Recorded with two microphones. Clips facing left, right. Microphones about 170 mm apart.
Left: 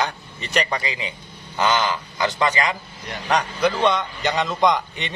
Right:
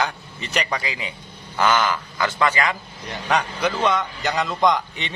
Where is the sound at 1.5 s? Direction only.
20° left (ahead or behind).